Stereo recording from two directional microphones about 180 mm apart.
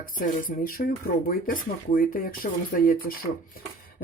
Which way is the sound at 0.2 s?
50° left (ahead or behind).